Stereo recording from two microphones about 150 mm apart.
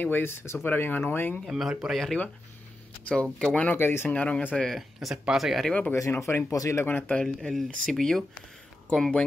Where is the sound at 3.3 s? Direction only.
5° left (ahead or behind).